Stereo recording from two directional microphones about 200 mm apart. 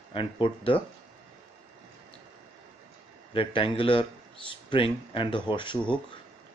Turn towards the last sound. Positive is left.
turn(degrees=25)  # may be behind; listen again after turning